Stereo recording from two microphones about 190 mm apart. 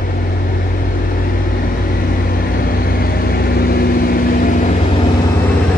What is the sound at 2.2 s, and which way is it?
Vehicle, 50° left (ahead or behind).